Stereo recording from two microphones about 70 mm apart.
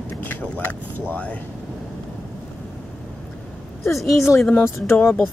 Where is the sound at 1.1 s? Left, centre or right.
Centre.